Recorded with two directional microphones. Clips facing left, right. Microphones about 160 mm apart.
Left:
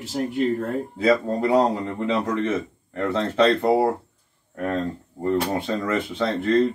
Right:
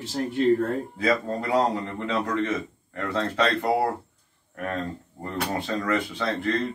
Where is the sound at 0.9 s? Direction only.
25° left (ahead or behind).